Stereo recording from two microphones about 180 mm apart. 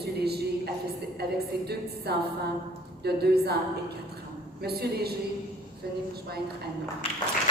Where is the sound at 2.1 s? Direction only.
60° right (ahead or behind).